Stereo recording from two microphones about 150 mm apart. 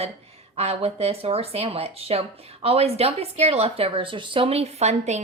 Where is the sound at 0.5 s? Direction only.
45° right (ahead or behind).